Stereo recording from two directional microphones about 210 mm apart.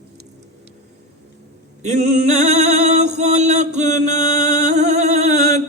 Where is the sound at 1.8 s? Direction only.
35° right (ahead or behind).